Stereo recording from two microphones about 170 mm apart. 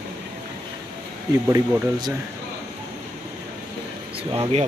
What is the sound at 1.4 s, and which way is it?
Speech, 15° right (ahead or behind).